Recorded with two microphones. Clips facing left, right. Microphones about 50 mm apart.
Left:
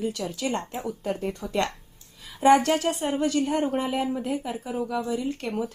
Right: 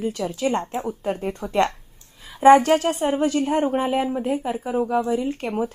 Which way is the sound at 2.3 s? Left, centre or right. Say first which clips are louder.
Right 6 dB; right.